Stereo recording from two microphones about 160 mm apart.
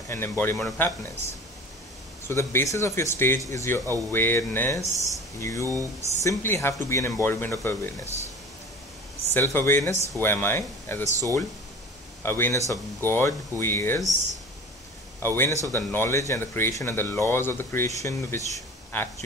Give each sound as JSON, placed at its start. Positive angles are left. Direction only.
{"t": 0.1, "sound": "speech", "side_deg": 15}
{"t": 2.2, "sound": "speech", "side_deg": 15}
{"t": 5.6, "sound": "speech", "side_deg": -20}
{"t": 6.2, "sound": "speech", "side_deg": 15}
{"t": 9.3, "sound": "speech", "side_deg": 15}
{"t": 12.2, "sound": "speech", "side_deg": 15}
{"t": 15.2, "sound": "speech", "side_deg": 15}